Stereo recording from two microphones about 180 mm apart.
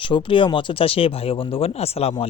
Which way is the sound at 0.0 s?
30° left (ahead or behind).